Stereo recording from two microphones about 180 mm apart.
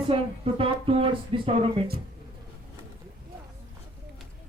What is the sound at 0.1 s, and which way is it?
Speech, 30° right (ahead or behind).